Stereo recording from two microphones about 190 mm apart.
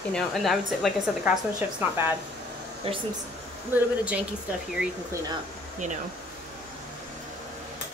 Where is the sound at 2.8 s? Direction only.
30° right (ahead or behind).